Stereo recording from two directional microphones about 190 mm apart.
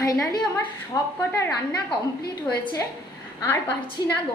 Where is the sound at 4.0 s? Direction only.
20° left (ahead or behind).